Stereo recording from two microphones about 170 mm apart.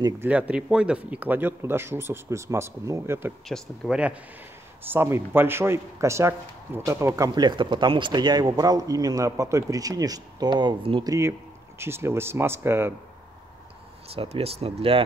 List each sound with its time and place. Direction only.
0.2 s speech: 10° right (ahead or behind)
3.4 s speech: centre (ahead or behind); by 11.1 s 30° right (ahead or behind)
11.8 s speech: 15° right (ahead or behind)
14.1 s speech: 35° right (ahead or behind)